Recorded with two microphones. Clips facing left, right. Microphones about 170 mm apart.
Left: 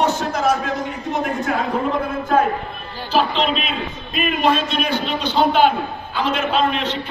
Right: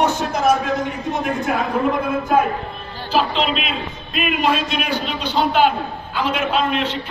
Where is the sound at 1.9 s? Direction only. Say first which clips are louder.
Right 2 dB; 10° right (ahead or behind).